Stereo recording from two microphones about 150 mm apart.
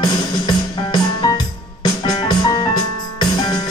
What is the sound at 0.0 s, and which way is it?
Music, 25° left (ahead or behind).